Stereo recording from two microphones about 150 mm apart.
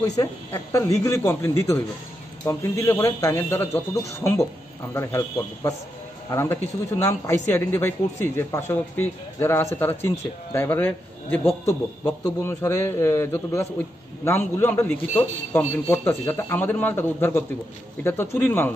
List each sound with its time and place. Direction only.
0.0 s a man's voice: 25° left (ahead or behind)